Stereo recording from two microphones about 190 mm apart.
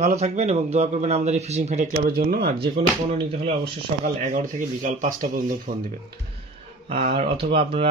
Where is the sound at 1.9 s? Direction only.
50° right (ahead or behind).